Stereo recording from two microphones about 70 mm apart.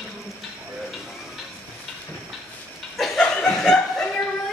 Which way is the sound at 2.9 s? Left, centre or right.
Centre.